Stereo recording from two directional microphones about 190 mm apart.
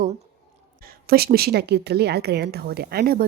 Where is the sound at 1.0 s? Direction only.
55° right (ahead or behind).